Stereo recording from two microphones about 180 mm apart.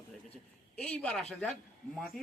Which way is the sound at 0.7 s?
5° left (ahead or behind).